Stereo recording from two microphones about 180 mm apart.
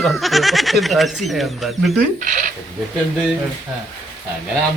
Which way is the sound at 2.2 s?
45° right (ahead or behind).